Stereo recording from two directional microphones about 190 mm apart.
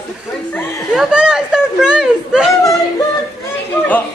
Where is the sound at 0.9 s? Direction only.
5° right (ahead or behind).